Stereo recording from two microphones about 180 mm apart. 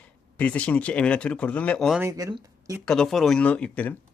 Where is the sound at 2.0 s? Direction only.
15° right (ahead or behind).